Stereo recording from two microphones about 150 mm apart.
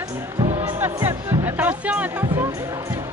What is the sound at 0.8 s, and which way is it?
Music, 15° right (ahead or behind).